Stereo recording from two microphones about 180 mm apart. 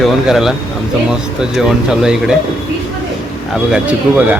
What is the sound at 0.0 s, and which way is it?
Speech, centre (ahead or behind).